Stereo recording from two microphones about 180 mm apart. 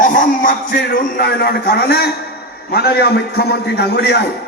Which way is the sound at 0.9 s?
60° left (ahead or behind).